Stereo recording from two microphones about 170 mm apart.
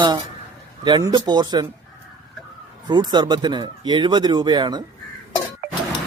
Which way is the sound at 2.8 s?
25° right (ahead or behind).